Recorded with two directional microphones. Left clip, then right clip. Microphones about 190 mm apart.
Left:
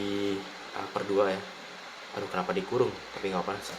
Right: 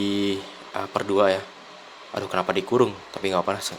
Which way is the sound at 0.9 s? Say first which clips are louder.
Right 7 dB; 60° right (ahead or behind).